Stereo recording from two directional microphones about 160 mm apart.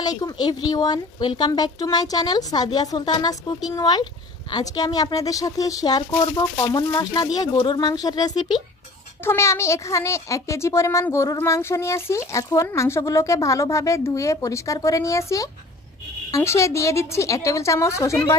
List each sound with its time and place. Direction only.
0.0 s speech: 25° left (ahead or behind)